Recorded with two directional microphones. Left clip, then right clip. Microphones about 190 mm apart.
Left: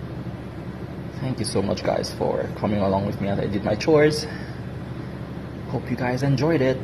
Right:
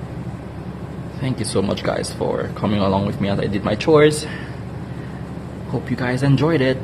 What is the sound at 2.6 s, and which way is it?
Speech, 15° right (ahead or behind).